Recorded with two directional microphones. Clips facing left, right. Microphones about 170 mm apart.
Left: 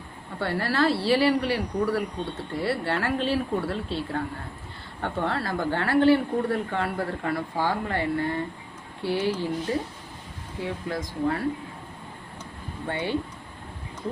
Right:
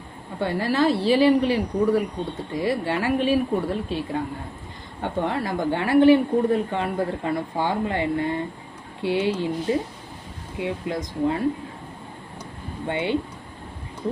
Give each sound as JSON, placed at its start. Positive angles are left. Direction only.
{"t": 0.3, "sound": "speech", "side_deg": -15}
{"t": 12.9, "sound": "speech", "side_deg": -20}